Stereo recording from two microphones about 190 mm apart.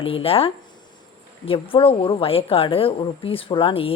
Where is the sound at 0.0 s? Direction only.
30° left (ahead or behind).